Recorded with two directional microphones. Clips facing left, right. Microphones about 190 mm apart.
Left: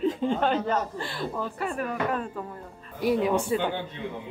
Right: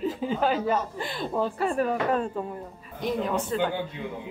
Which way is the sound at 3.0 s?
10° left (ahead or behind).